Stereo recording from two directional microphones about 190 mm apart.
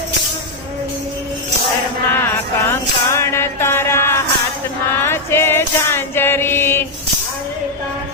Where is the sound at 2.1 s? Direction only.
10° left (ahead or behind).